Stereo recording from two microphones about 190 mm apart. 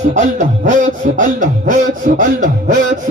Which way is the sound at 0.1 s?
40° right (ahead or behind).